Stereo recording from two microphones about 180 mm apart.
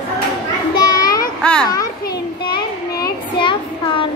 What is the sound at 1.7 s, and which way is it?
Child singing, 20° left (ahead or behind).